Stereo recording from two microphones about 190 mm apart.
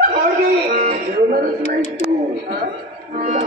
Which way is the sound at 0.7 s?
45° right (ahead or behind).